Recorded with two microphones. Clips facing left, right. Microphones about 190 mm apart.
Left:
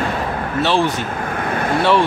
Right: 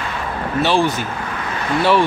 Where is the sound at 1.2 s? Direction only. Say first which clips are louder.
Left 4 dB; 50° left (ahead or behind).